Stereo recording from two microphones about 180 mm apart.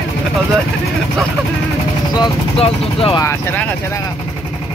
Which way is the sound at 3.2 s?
10° left (ahead or behind).